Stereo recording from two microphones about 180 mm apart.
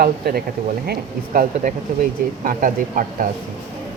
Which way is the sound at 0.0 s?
60° right (ahead or behind).